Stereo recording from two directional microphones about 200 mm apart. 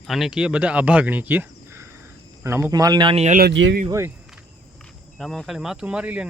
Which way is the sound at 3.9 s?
15° right (ahead or behind).